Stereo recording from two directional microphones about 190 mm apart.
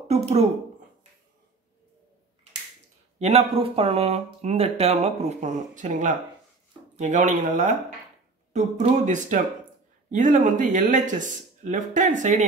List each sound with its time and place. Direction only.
0.1 s speech: 35° right (ahead or behind)
3.2 s speech: 35° right (ahead or behind)